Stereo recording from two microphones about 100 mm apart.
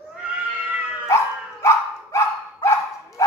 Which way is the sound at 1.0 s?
30° left (ahead or behind).